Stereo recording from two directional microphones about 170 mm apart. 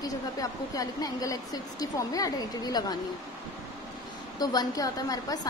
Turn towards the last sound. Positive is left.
turn(degrees=20)  # may be behind; listen again after turning